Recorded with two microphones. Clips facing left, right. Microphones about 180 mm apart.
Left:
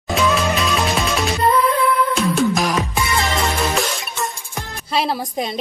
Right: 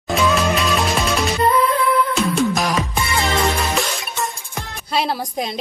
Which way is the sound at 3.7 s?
Centre (ahead or behind).